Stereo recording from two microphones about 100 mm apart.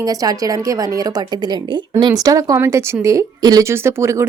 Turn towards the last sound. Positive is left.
turn(degrees=-30)  # may be behind; listen again after turning